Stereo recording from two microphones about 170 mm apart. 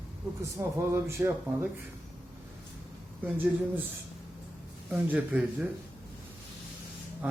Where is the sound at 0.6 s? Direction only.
15° right (ahead or behind).